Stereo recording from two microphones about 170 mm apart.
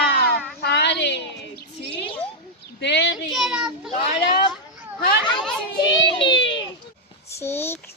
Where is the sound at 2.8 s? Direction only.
90° left.